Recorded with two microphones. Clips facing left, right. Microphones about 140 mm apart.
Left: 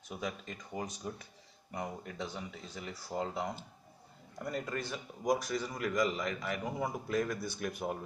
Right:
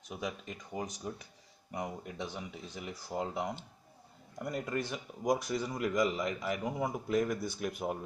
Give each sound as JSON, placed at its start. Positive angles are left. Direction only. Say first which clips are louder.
{"t": 0.1, "sound": "speech", "louder": "right 1 dB", "side_deg": -15}